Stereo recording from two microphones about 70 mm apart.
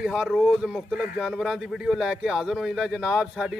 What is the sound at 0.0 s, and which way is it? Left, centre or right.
A man's voice, centre.